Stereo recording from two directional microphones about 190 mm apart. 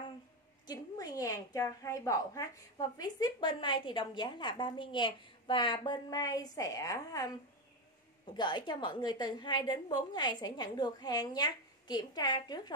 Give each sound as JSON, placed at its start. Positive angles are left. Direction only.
{"t": 0.7, "sound": "a woman's voice", "side_deg": 20}
{"t": 8.4, "sound": "a woman's voice", "side_deg": 25}